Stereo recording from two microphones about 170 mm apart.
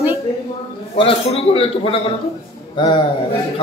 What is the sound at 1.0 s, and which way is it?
A man's voice, 35° left (ahead or behind).